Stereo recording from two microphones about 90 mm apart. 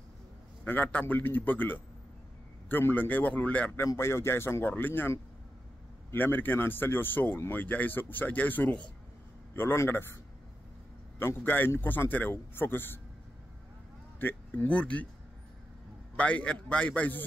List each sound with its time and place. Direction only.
0.7 s speech: 20° left (ahead or behind)
3.7 s speech: 30° left (ahead or behind)
11.1 s speech: 25° left (ahead or behind)
14.2 s a man's voice: 20° left (ahead or behind)
16.2 s a man's voice: 15° left (ahead or behind)